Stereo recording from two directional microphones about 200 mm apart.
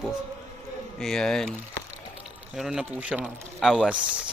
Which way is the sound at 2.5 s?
Centre (ahead or behind).